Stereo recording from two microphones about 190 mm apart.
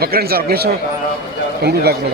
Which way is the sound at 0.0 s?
55° right (ahead or behind).